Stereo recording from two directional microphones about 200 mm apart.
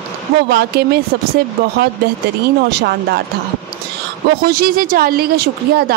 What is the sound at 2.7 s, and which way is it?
Speech, 55° right (ahead or behind).